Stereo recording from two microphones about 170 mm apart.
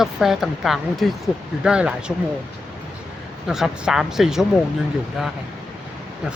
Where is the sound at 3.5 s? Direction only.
5° right (ahead or behind).